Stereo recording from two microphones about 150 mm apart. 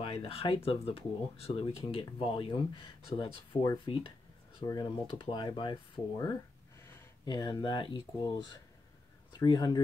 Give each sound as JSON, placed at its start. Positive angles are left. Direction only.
{"t": 0.0, "sound": "speech", "side_deg": 40}
{"t": 4.6, "sound": "speech", "side_deg": 25}